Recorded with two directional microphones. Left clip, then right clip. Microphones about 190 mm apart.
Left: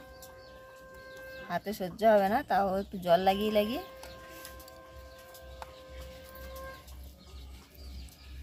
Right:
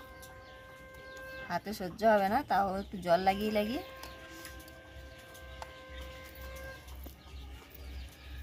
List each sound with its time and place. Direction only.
1.5 s a woman's voice: 20° left (ahead or behind)